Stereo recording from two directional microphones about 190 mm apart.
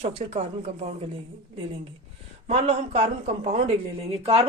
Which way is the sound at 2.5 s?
35° right (ahead or behind).